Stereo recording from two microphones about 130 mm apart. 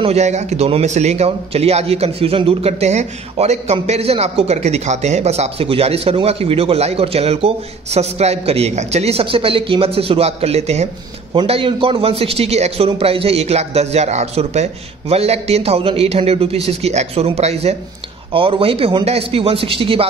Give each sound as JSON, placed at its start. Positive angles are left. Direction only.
{"t": 0.0, "sound": "a man's voice", "side_deg": -55}
{"t": 11.3, "sound": "a man's voice", "side_deg": -45}
{"t": 18.3, "sound": "a man's voice", "side_deg": -45}